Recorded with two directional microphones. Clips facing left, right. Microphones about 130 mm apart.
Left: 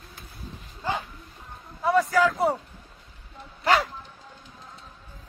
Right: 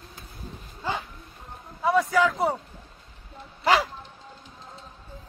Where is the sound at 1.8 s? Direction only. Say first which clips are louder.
Even; centre (ahead or behind).